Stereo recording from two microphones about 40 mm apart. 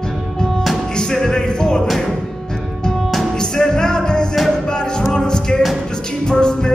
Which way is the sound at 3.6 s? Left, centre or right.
Centre.